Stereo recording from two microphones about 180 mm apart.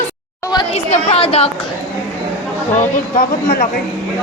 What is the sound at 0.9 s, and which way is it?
Speech, 35° left (ahead or behind).